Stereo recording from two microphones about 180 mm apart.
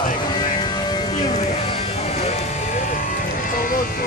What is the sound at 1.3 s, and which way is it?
Music, 35° left (ahead or behind).